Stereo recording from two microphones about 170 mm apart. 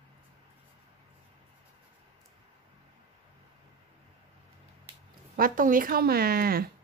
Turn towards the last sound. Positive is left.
turn(degrees=-60)  # may be behind; listen again after turning